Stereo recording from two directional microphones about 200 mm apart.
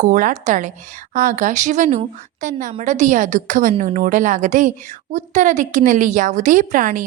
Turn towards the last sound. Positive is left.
turn(degrees=-40)  # may be behind; listen again after turning